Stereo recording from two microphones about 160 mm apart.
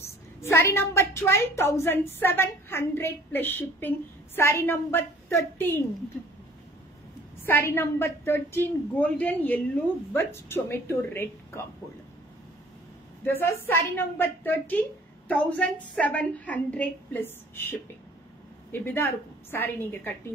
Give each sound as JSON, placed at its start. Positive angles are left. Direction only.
{"t": 0.4, "sound": "a woman's voice", "side_deg": 15}
{"t": 7.4, "sound": "a woman's voice", "side_deg": 15}
{"t": 13.2, "sound": "a woman's voice", "side_deg": 15}